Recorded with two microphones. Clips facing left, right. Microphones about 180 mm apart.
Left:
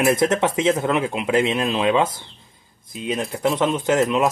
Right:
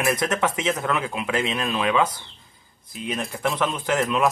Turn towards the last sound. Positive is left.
turn(degrees=25)  # may be behind; listen again after turning